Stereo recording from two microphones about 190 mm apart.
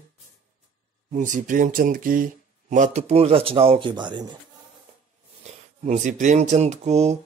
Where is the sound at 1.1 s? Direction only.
40° right (ahead or behind); by 4.4 s 25° right (ahead or behind).